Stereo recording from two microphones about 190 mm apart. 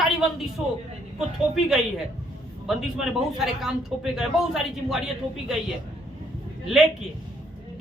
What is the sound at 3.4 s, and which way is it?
A woman's voice, centre (ahead or behind).